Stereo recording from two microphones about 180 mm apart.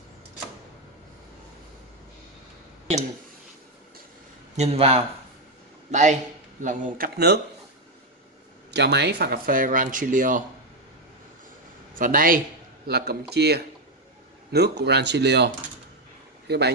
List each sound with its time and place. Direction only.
4.6 s speech: 35° right (ahead or behind)
8.7 s speech: 70° right (ahead or behind); by 10.4 s 45° right (ahead or behind)
11.9 s speech: 50° right (ahead or behind); by 16.7 s 65° right (ahead or behind)